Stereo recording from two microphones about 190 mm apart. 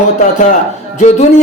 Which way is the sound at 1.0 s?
35° left (ahead or behind).